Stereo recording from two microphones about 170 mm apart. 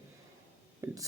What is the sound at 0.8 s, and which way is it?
Speech, 20° right (ahead or behind).